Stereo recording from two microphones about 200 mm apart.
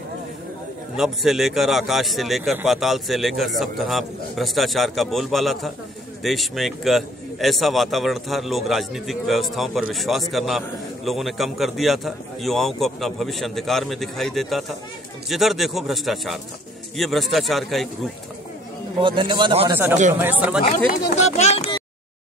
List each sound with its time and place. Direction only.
0.9 s a man's voice: centre (ahead or behind)
18.9 s a man's voice: 25° right (ahead or behind)
19.7 s speech: 10° right (ahead or behind)
21.1 s speech: 35° left (ahead or behind)